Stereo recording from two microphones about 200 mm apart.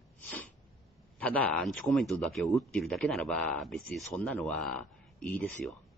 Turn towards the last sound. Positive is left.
turn(degrees=0)  # may be behind; listen again after turning